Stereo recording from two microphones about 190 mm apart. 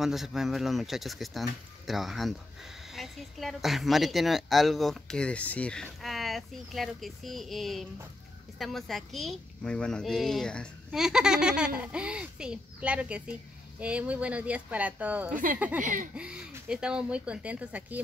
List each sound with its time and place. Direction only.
0.0 s speech: centre (ahead or behind)
15.3 s speech: 45° right (ahead or behind)
16.2 s speech: 5° right (ahead or behind)